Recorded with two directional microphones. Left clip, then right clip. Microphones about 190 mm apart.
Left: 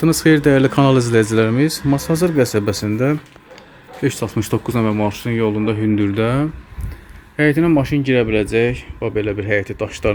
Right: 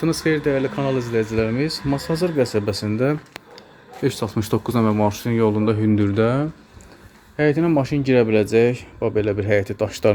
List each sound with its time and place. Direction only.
0.0 s speech: 25° left (ahead or behind)
1.5 s speech: 20° left (ahead or behind); by 10.1 s 10° right (ahead or behind)